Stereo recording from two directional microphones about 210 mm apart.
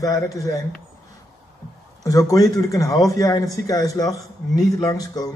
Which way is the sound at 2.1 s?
15° left (ahead or behind).